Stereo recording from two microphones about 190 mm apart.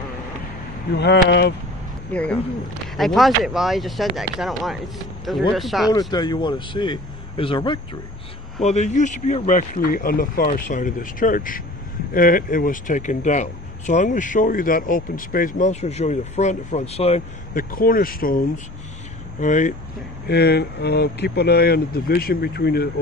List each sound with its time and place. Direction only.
0.9 s speech: 65° left (ahead or behind)
2.1 s speech: 5° left (ahead or behind)
5.9 s speech: 20° left (ahead or behind)
8.6 s speech: 35° left (ahead or behind)
17.6 s speech: 50° left (ahead or behind)
19.4 s speech: 40° left (ahead or behind)
20.2 s speech: 60° left (ahead or behind)